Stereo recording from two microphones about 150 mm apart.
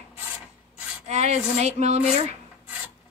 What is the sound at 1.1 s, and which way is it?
Speech, 50° right (ahead or behind).